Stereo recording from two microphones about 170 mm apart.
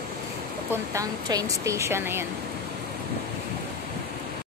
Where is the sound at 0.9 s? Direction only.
20° right (ahead or behind).